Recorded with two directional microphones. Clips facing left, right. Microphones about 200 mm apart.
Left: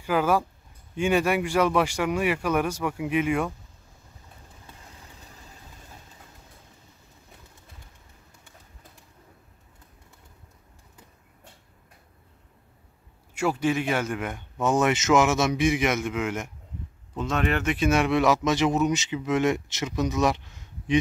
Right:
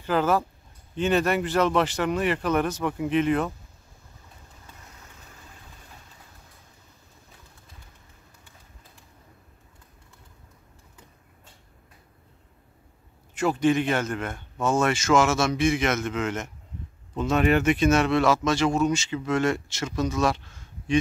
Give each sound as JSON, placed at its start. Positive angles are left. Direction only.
{"t": 0.0, "sound": "speech", "side_deg": 10}
{"t": 13.3, "sound": "speech", "side_deg": 10}
{"t": 17.1, "sound": "speech", "side_deg": -5}
{"t": 17.7, "sound": "speech", "side_deg": 10}